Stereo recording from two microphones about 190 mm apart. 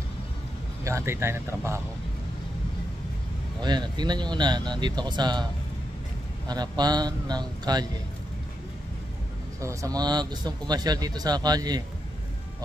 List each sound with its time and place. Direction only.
0.8 s speech: 15° right (ahead or behind)
3.6 s speech: 20° right (ahead or behind)
9.6 s speech: 15° right (ahead or behind)